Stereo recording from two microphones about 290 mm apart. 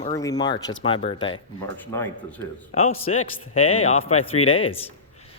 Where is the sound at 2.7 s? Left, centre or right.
Left.